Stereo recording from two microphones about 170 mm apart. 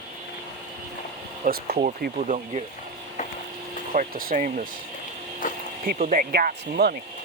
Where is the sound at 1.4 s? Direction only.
65° right (ahead or behind).